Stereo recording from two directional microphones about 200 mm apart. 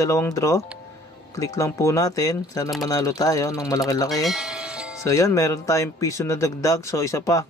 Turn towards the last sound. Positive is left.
turn(degrees=15)  # may be behind; listen again after turning